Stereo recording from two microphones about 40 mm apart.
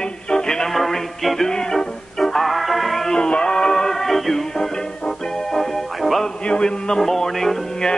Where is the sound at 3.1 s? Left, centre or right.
Left; by 6.2 s centre.